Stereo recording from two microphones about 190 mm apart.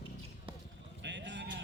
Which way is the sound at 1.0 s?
70° right (ahead or behind).